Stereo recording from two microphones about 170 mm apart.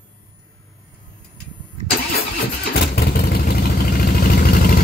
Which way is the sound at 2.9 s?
65° left (ahead or behind).